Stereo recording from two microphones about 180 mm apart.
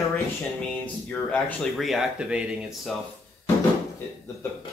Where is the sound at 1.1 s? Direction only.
10° left (ahead or behind).